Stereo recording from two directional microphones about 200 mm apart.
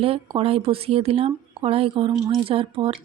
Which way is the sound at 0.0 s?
30° right (ahead or behind).